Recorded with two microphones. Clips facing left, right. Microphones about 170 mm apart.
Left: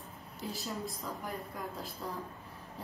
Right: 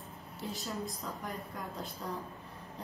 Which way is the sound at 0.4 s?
Centre (ahead or behind).